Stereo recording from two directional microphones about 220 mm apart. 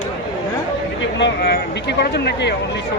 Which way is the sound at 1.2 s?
50° left (ahead or behind).